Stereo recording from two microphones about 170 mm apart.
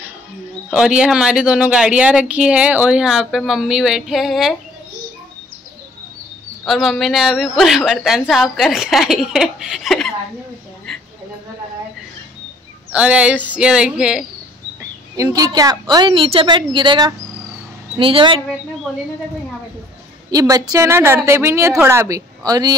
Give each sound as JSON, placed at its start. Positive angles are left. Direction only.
{"t": 0.7, "sound": "speech", "side_deg": -5}
{"t": 6.6, "sound": "speech", "side_deg": 0}
{"t": 12.9, "sound": "speech", "side_deg": -5}
{"t": 14.8, "sound": "a woman's voice", "side_deg": -20}
{"t": 18.9, "sound": "speech", "side_deg": 0}
{"t": 20.2, "sound": "a woman's voice", "side_deg": -20}